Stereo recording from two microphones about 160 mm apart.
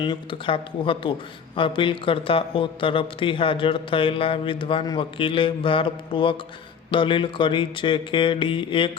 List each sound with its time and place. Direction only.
0.0 s a man's voice: 30° left (ahead or behind)